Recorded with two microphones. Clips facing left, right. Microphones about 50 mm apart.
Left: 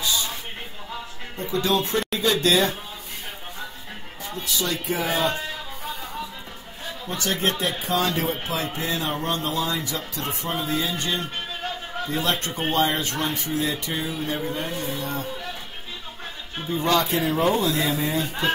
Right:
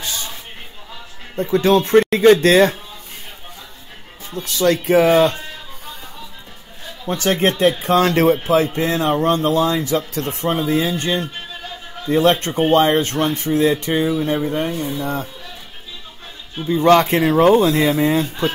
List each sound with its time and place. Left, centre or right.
0.0 s a sound: right
1.3 s speech: right
4.4 s speech: right
7.2 s speech: right
14.3 s speech: right
16.6 s speech: right